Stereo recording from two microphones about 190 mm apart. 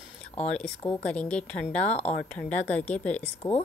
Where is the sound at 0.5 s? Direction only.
5° left (ahead or behind).